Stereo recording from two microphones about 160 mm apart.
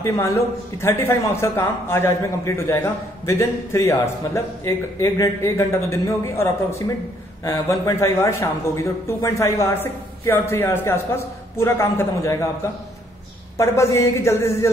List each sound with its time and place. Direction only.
0.0 s a man's voice: 15° left (ahead or behind)
13.6 s a man's voice: 20° left (ahead or behind)